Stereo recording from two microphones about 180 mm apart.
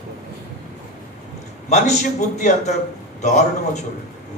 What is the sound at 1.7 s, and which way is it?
A man's voice, 40° left (ahead or behind).